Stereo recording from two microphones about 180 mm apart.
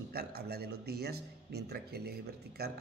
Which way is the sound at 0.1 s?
60° right (ahead or behind).